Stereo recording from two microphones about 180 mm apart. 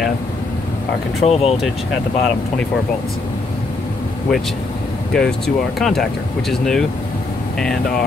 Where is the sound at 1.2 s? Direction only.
35° left (ahead or behind).